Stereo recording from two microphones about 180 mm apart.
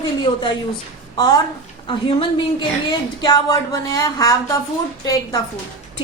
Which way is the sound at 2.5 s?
25° left (ahead or behind).